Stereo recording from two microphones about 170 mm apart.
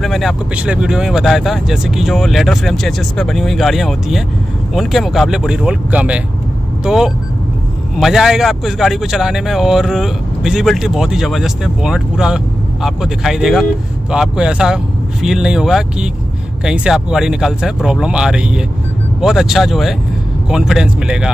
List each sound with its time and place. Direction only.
0.0 s speech: centre (ahead or behind)